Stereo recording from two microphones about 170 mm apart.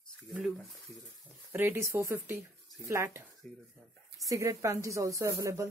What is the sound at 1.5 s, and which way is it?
Speech, 15° right (ahead or behind).